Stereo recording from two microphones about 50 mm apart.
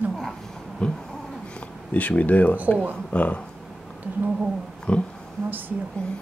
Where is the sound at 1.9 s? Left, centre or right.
Left.